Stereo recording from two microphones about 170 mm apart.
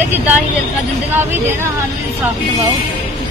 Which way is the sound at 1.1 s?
15° right (ahead or behind).